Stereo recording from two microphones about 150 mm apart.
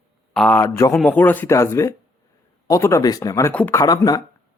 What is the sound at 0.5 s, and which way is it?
Speech, 20° left (ahead or behind).